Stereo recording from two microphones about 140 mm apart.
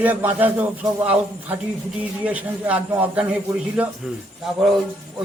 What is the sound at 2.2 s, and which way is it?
Speech, 10° right (ahead or behind).